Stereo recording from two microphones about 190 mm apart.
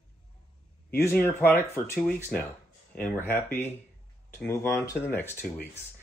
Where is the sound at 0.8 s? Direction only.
10° left (ahead or behind).